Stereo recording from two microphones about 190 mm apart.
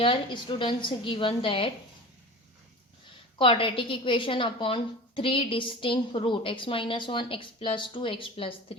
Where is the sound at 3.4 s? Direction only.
25° left (ahead or behind).